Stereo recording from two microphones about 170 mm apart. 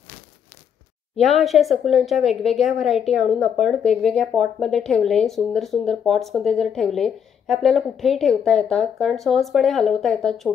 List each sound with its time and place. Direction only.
1.2 s speech: centre (ahead or behind)